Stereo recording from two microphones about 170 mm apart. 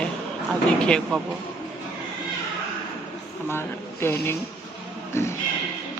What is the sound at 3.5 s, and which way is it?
Speech, 15° left (ahead or behind).